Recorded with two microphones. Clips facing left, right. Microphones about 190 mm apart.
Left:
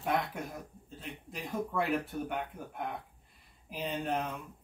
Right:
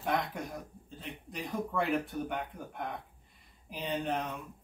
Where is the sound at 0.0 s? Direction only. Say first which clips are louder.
Even; centre (ahead or behind).